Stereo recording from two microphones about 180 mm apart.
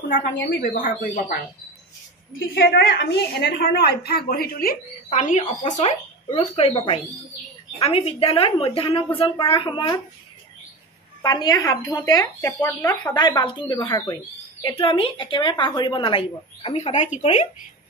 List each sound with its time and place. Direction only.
0.1 s speech: 50° left (ahead or behind)
2.4 s a woman's voice: 65° left (ahead or behind); by 9.9 s 25° left (ahead or behind)
11.2 s speech: 20° left (ahead or behind)
13.0 s a woman's voice: 25° left (ahead or behind)